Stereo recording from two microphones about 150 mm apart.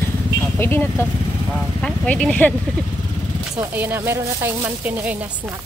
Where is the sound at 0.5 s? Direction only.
15° left (ahead or behind).